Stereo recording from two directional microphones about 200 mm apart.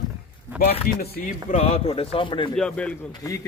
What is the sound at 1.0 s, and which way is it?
Speech, 50° left (ahead or behind).